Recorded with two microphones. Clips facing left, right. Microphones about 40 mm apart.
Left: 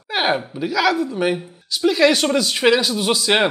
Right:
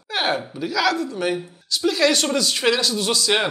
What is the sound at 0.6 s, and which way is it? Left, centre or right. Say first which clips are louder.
Speech: left 2 dB; centre.